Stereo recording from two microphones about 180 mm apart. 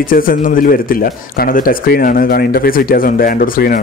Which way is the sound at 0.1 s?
50° left (ahead or behind).